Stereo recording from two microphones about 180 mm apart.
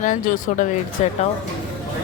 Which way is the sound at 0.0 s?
45° left (ahead or behind).